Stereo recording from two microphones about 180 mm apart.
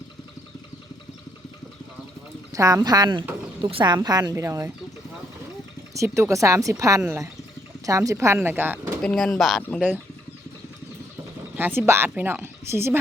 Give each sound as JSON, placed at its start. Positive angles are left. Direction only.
{"t": 2.5, "sound": "speech", "side_deg": -15}
{"t": 5.9, "sound": "speech", "side_deg": -15}
{"t": 9.0, "sound": "speech", "side_deg": 0}
{"t": 11.5, "sound": "speech", "side_deg": -10}